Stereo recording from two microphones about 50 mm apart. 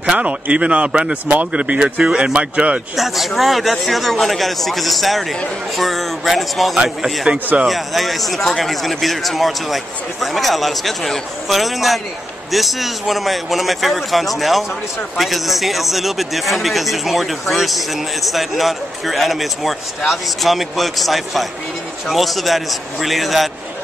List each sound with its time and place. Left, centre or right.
0.1 s speech: right
3.0 s speech: centre